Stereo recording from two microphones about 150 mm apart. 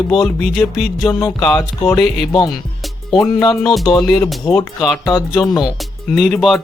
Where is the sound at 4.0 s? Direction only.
25° left (ahead or behind).